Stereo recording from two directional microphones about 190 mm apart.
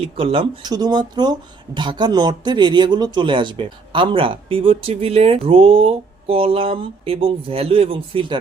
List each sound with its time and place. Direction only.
0.0 s speech: 30° right (ahead or behind)